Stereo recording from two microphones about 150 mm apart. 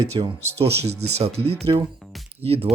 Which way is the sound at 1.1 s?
45° right (ahead or behind).